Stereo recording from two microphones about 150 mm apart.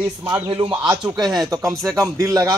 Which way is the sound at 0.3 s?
35° right (ahead or behind).